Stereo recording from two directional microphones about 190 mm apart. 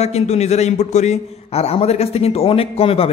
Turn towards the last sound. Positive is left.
turn(degrees=30)  # may be behind; listen again after turning